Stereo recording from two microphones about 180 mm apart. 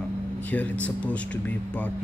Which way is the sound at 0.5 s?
10° left (ahead or behind).